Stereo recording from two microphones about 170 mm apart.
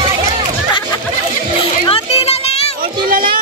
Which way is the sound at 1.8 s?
35° left (ahead or behind).